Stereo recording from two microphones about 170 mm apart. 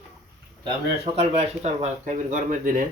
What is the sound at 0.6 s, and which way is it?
Speech, 35° right (ahead or behind).